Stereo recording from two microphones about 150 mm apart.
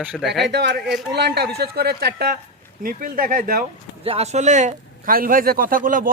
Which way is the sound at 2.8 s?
70° right (ahead or behind).